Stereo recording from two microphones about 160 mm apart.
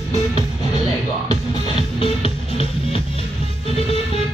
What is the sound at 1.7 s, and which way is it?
Music, 35° left (ahead or behind).